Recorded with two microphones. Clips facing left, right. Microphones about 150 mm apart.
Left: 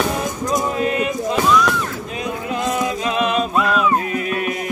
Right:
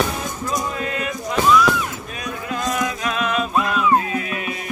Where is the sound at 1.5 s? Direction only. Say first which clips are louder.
Right 2 dB; centre (ahead or behind).